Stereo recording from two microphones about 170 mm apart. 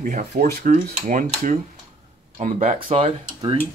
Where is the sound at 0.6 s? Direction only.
55° right (ahead or behind).